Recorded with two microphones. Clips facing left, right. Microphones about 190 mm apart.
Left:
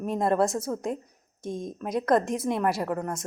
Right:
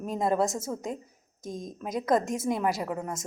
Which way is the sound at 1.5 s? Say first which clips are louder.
Left 4 dB; 30° left (ahead or behind).